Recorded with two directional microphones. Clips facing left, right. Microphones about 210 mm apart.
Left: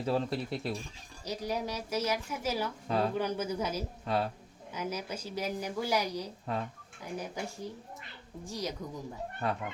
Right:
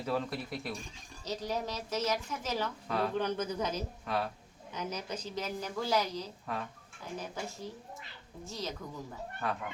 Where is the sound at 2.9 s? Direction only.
30° left (ahead or behind).